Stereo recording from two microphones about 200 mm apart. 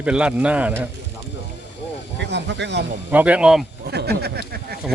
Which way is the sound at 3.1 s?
5° right (ahead or behind).